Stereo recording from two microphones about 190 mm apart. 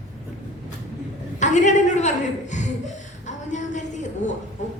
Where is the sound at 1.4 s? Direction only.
40° left (ahead or behind).